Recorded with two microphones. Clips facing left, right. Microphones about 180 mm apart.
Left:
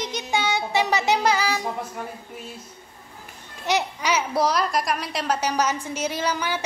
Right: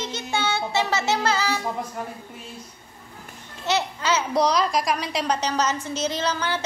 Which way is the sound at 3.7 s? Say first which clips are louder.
Even; 15° left (ahead or behind).